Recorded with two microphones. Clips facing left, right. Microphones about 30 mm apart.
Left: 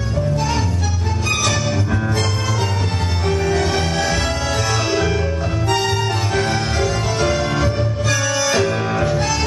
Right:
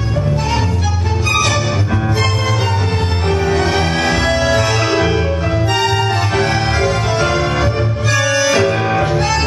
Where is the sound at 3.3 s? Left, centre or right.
Right.